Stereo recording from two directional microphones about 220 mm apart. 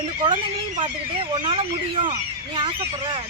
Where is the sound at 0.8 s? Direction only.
25° right (ahead or behind).